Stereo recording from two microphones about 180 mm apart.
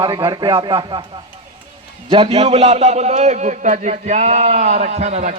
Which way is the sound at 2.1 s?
35° right (ahead or behind).